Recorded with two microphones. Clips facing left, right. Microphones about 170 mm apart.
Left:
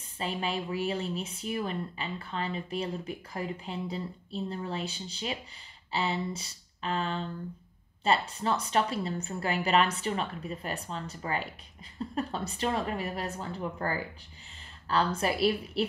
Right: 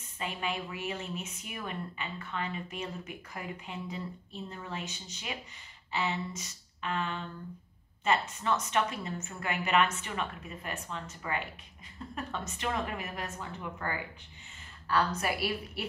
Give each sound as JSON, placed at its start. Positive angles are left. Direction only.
{"t": 0.2, "sound": "a woman's voice", "side_deg": 35}